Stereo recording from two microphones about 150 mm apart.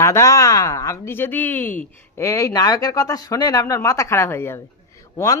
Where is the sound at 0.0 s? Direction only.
20° left (ahead or behind).